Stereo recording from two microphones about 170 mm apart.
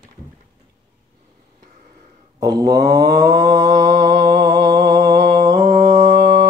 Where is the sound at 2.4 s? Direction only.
20° right (ahead or behind).